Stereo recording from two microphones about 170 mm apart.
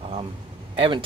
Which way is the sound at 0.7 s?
30° right (ahead or behind).